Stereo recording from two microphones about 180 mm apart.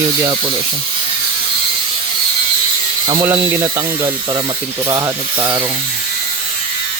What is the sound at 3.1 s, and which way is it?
Speech, 20° right (ahead or behind).